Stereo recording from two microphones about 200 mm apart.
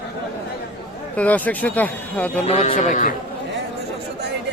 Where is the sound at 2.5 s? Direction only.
35° left (ahead or behind).